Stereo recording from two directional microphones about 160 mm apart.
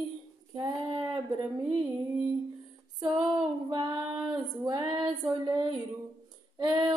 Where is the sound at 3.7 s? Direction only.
25° right (ahead or behind).